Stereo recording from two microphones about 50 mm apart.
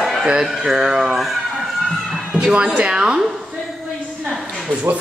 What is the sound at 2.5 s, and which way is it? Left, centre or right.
Speech, right.